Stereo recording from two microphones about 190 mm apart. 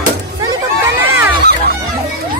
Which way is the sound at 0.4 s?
15° right (ahead or behind).